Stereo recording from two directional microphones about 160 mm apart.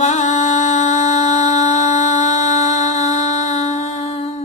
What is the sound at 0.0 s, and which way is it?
Music, 45° left (ahead or behind).